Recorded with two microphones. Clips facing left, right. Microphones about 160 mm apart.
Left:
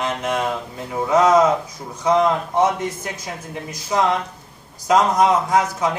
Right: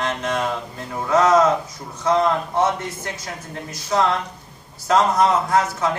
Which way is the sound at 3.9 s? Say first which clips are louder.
Left 1 dB; 15° left (ahead or behind).